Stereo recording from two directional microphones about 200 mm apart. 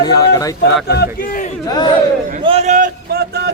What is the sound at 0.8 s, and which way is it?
Speech, 55° left (ahead or behind).